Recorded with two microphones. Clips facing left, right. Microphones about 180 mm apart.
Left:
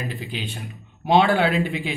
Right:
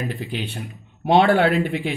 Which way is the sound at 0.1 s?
55° right (ahead or behind).